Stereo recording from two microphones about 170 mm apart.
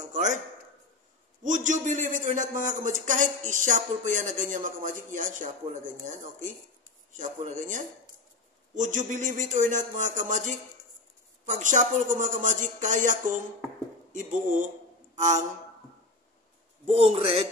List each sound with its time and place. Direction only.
0.1 s a man's voice: 45° right (ahead or behind)
1.4 s a man's voice: 45° right (ahead or behind)
15.1 s a sound: 45° right (ahead or behind)
16.8 s a man's voice: 35° right (ahead or behind)